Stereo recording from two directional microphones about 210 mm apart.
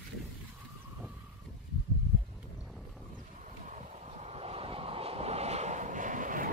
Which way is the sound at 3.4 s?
35° right (ahead or behind).